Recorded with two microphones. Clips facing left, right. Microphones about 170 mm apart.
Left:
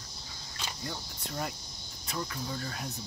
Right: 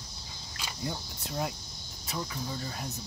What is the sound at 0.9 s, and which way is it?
Cricket, 10° right (ahead or behind).